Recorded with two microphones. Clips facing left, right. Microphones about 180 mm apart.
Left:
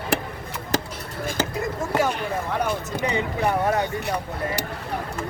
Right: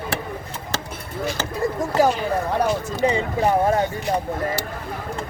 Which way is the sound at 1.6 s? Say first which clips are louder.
Right 7 dB; 35° right (ahead or behind).